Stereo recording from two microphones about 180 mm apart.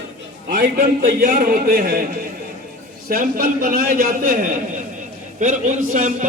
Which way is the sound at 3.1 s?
50° right (ahead or behind).